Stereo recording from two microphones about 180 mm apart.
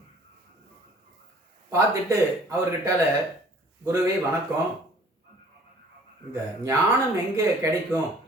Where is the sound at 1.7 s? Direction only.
15° right (ahead or behind).